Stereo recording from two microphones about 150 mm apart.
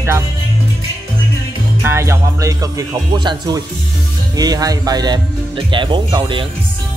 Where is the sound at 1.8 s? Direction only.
20° right (ahead or behind).